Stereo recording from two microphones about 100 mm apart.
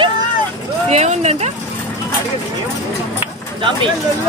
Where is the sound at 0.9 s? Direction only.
90° right.